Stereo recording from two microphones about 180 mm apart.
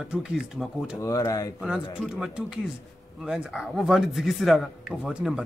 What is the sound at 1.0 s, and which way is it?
Speech, 15° left (ahead or behind).